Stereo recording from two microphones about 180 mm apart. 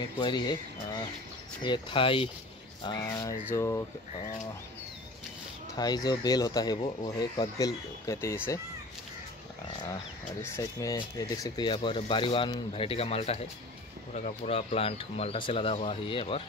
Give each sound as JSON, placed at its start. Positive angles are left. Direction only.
{"t": 0.2, "sound": "speech", "side_deg": 25}
{"t": 5.8, "sound": "speech", "side_deg": 20}
{"t": 10.4, "sound": "speech", "side_deg": 15}